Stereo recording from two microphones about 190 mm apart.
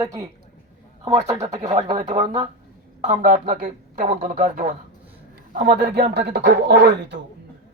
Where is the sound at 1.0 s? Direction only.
35° right (ahead or behind); by 7.2 s 60° right (ahead or behind).